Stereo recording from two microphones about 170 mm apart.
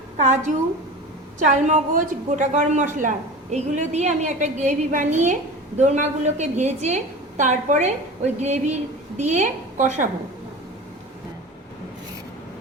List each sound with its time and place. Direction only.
0.2 s a woman's voice: 45° right (ahead or behind)